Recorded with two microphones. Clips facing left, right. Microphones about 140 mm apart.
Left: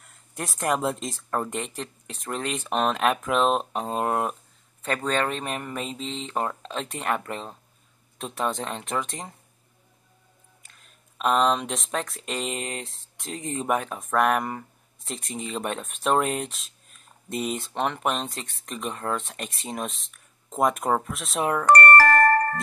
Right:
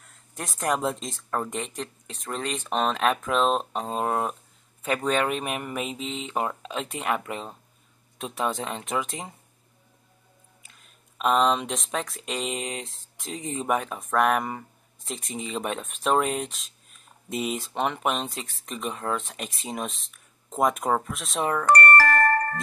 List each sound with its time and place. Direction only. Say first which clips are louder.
0.0 s speech: left 3 dB; centre (ahead or behind)
4.8 s speech: right 1 dB; 10° right (ahead or behind)
10.6 s speech: even; centre (ahead or behind)
21.6 s music: left 3 dB; 55° left (ahead or behind)